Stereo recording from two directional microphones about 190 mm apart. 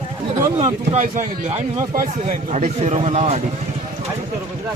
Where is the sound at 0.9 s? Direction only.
35° right (ahead or behind).